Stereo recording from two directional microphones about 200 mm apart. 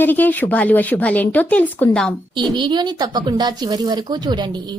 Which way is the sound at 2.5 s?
20° right (ahead or behind).